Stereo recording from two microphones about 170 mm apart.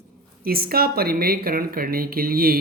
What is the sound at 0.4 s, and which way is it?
Speech, 60° right (ahead or behind).